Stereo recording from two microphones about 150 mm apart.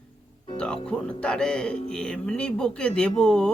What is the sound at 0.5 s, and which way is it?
A man's voice, 5° left (ahead or behind).